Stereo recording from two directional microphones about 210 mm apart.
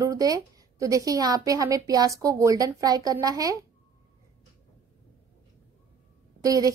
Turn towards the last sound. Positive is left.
turn(degrees=-15)  # may be behind; listen again after turning